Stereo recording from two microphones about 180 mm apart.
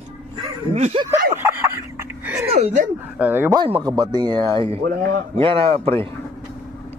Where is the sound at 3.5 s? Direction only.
25° right (ahead or behind).